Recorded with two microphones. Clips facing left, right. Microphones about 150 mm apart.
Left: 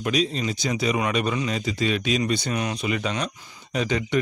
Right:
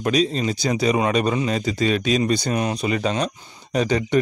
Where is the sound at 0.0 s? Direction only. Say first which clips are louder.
Right 4 dB; 40° right (ahead or behind).